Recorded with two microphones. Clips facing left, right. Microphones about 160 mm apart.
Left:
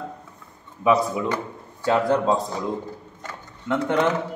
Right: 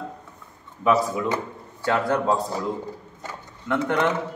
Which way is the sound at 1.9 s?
15° left (ahead or behind).